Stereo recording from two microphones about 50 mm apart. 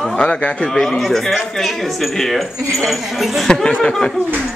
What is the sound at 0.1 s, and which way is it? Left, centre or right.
Speech, centre.